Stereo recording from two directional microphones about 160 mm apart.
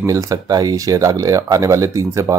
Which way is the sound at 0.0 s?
20° right (ahead or behind).